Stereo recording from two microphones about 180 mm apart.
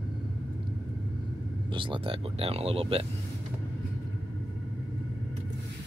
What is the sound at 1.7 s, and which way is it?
Speech, 30° right (ahead or behind).